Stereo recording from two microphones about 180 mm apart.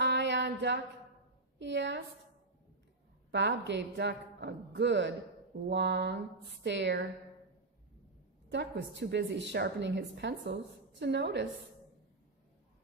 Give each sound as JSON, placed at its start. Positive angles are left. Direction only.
{"t": 0.0, "sound": "music", "side_deg": -80}
{"t": 1.6, "sound": "a woman's voice", "side_deg": -80}
{"t": 3.3, "sound": "a woman's voice", "side_deg": -75}
{"t": 8.5, "sound": "a woman's voice", "side_deg": -75}